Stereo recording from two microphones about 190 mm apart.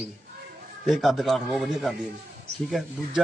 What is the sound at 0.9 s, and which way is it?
A man's voice, centre (ahead or behind).